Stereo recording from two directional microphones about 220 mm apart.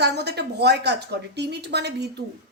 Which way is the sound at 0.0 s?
50° right (ahead or behind).